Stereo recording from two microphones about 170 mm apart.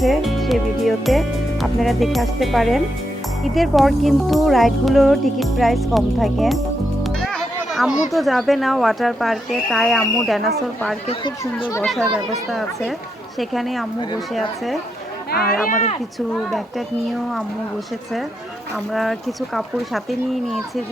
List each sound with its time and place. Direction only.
0.0 s speech: centre (ahead or behind)
7.0 s music: centre (ahead or behind)
8.1 s speech: centre (ahead or behind)
11.9 s speech: centre (ahead or behind)
15.3 s speech: 65° left (ahead or behind); by 16.0 s 45° left (ahead or behind)
19.5 s speech: centre (ahead or behind)